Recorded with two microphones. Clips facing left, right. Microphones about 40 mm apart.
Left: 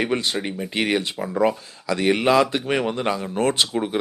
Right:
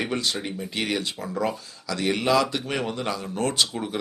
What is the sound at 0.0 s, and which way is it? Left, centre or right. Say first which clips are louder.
Speech: left 4 dB; left.